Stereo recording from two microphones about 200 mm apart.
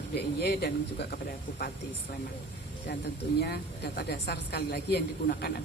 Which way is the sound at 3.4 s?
50° left (ahead or behind).